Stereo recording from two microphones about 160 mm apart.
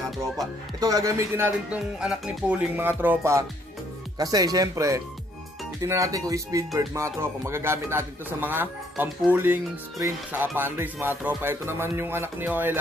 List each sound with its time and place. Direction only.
0.7 s speech: 20° right (ahead or behind)